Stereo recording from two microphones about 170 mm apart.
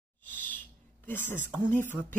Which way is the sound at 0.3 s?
10° left (ahead or behind).